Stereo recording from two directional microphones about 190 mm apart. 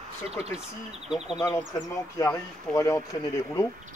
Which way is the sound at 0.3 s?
35° right (ahead or behind).